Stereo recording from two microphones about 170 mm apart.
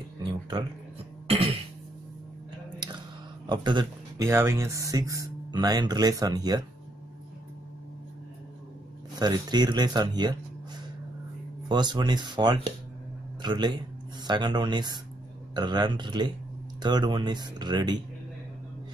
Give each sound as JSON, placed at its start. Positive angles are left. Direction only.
{"t": 0.2, "sound": "a sound", "side_deg": -25}
{"t": 1.2, "sound": "cough", "side_deg": -35}
{"t": 3.4, "sound": "speech", "side_deg": -25}
{"t": 9.2, "sound": "speech", "side_deg": -25}
{"t": 11.7, "sound": "a man's voice", "side_deg": -25}